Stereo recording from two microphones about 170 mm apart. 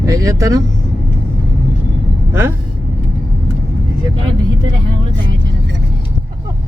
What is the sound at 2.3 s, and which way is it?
Speech, 15° right (ahead or behind).